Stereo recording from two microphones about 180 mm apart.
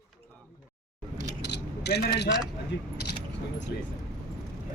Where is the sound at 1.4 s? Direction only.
70° left (ahead or behind).